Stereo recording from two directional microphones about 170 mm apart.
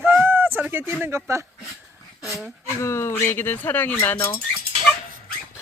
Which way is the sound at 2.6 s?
15° left (ahead or behind).